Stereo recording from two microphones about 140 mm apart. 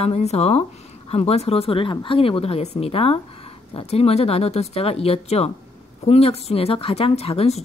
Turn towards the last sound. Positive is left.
turn(degrees=45)  # may be behind; listen again after turning